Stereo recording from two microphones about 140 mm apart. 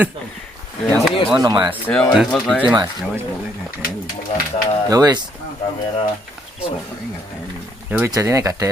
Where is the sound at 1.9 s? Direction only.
10° left (ahead or behind).